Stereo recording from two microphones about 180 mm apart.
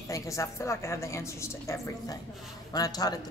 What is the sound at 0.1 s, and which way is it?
A man's voice, 15° left (ahead or behind).